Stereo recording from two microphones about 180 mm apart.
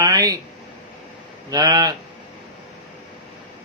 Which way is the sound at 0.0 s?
20° right (ahead or behind).